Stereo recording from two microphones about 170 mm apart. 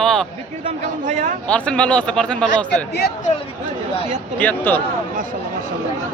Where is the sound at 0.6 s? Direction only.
45° right (ahead or behind).